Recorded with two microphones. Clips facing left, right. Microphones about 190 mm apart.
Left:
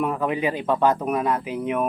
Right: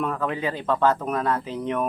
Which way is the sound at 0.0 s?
15° left (ahead or behind).